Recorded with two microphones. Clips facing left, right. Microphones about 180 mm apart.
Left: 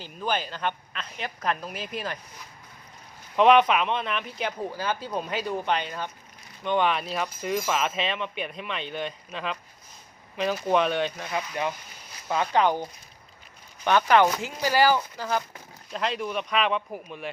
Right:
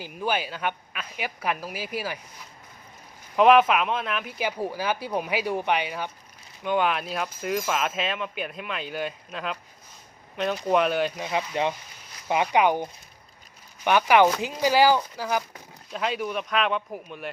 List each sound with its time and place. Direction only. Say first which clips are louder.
0.0 s speech: right 1 dB; 10° right (ahead or behind)
3.3 s speech: right 1 dB; 5° right (ahead or behind)
11.2 s speech: right 3 dB; 20° right (ahead or behind); by 17.3 s centre (ahead or behind)